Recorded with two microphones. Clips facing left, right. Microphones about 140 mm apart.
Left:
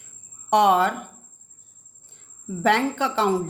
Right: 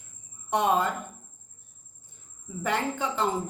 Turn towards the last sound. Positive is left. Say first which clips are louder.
# left 6 dB
turn(degrees=80)